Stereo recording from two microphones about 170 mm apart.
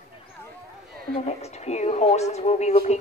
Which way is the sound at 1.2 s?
40° left (ahead or behind).